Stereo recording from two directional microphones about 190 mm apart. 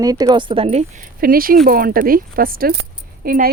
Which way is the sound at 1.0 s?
50° right (ahead or behind).